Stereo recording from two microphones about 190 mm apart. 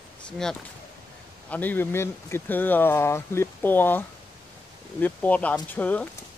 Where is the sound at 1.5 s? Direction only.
10° left (ahead or behind).